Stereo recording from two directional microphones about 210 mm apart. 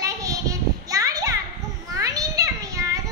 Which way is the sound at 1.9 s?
15° right (ahead or behind).